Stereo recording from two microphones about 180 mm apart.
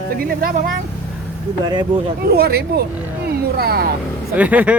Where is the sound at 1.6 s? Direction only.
25° right (ahead or behind).